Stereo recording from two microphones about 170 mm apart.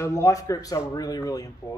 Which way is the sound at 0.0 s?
15° left (ahead or behind).